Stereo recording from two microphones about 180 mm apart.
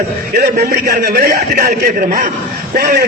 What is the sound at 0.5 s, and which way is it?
A man's voice, 55° right (ahead or behind).